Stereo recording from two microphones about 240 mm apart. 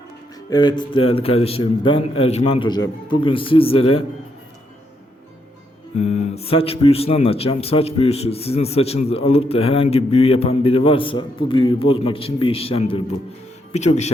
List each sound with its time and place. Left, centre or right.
0.5 s speech: centre
6.0 s speech: left